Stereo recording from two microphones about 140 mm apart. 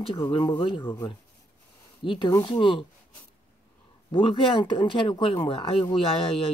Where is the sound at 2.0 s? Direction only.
30° left (ahead or behind).